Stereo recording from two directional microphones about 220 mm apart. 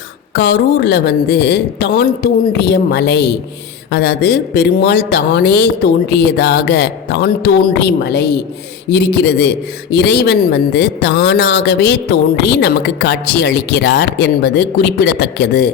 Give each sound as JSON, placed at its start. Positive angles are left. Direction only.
{"t": 0.3, "sound": "speech", "side_deg": 50}